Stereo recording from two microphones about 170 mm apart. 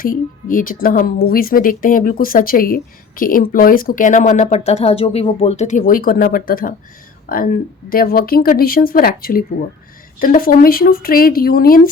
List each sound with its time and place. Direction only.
0.0 s a woman's voice: 55° left (ahead or behind)